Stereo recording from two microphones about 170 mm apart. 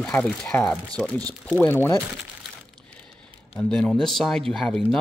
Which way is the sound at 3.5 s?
5° left (ahead or behind).